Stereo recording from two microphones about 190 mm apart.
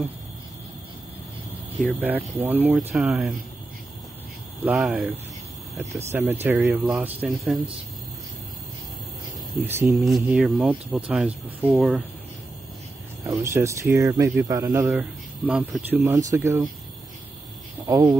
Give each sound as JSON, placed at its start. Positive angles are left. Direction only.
{"t": 1.8, "sound": "speech", "side_deg": -5}
{"t": 4.6, "sound": "speech", "side_deg": -5}
{"t": 6.4, "sound": "speech", "side_deg": -10}
{"t": 9.6, "sound": "speech", "side_deg": -10}
{"t": 10.0, "sound": "speech", "side_deg": 0}
{"t": 13.3, "sound": "speech", "side_deg": -15}
{"t": 14.9, "sound": "speech", "side_deg": -5}
{"t": 17.8, "sound": "speech", "side_deg": -15}